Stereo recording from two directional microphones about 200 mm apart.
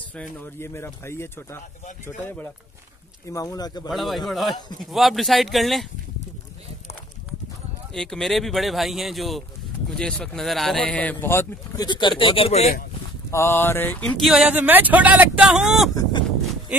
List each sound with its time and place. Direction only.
0.1 s speech: 10° left (ahead or behind)
3.9 s speech: centre (ahead or behind)
7.9 s speech: 5° left (ahead or behind); by 12.7 s 30° left (ahead or behind)
13.3 s speech: 15° left (ahead or behind); by 15.9 s 5° right (ahead or behind)
15.9 s a sound: 20° left (ahead or behind)